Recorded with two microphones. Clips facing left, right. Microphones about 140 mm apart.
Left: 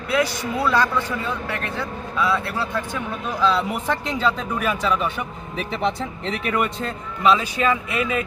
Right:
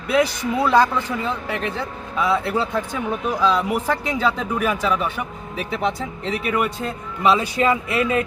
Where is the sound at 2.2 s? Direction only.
20° right (ahead or behind).